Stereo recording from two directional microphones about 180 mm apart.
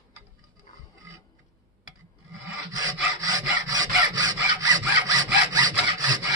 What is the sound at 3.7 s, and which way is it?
Sawing, 20° right (ahead or behind).